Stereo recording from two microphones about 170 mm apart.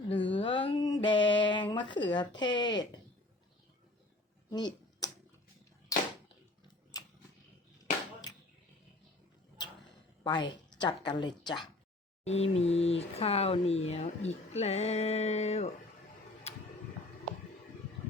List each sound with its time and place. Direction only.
0.3 s a sound: 30° left (ahead or behind)
2.4 s a woman's voice: 25° left (ahead or behind)
4.5 s finger snapping: 25° left (ahead or behind)
5.9 s a sound: 20° left (ahead or behind)
10.2 s a woman's voice: 25° left (ahead or behind)
12.2 s speech: 40° left (ahead or behind)